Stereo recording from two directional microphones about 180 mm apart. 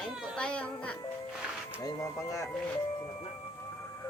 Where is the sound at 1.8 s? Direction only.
15° left (ahead or behind).